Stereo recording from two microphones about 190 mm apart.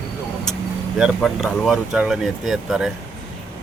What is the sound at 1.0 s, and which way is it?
Speech, centre (ahead or behind).